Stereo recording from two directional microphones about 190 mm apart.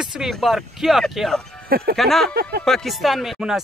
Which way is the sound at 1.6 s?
50° right (ahead or behind).